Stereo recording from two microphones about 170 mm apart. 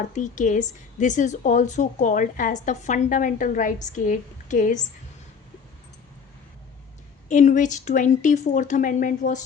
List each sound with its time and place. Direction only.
0.2 s a woman's voice: 45° left (ahead or behind)
7.3 s a woman's voice: 45° left (ahead or behind)